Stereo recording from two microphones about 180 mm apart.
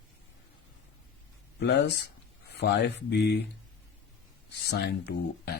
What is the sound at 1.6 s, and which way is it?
Speech, 65° left (ahead or behind).